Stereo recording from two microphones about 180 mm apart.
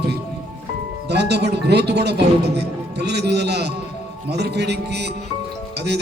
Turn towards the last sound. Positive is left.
turn(degrees=-65)  # may be behind; listen again after turning